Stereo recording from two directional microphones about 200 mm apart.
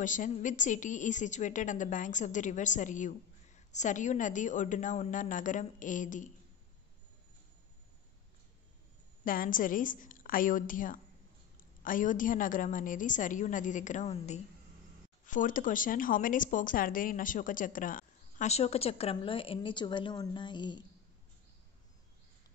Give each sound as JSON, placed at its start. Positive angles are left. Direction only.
{"t": 0.0, "sound": "a woman's voice", "side_deg": 40}
{"t": 9.2, "sound": "a woman's voice", "side_deg": 45}